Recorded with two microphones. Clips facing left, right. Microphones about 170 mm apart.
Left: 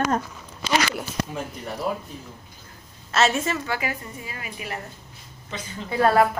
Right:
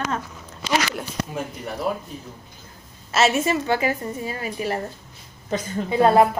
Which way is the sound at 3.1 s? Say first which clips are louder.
Right 2 dB; 5° right (ahead or behind).